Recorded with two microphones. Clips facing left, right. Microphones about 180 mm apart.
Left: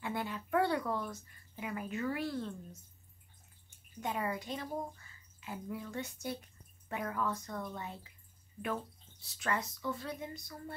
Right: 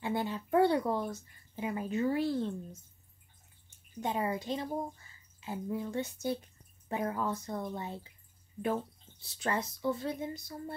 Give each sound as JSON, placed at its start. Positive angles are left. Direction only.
{"t": 0.0, "sound": "speech", "side_deg": -30}
{"t": 4.0, "sound": "speech", "side_deg": -25}
{"t": 9.2, "sound": "speech", "side_deg": -30}